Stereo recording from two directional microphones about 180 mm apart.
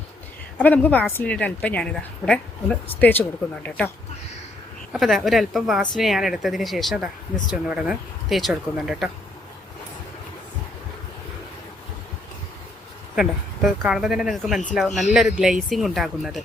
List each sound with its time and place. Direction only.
0.6 s a woman's voice: 10° left (ahead or behind)
4.9 s a woman's voice: centre (ahead or behind)
13.1 s a woman's voice: centre (ahead or behind)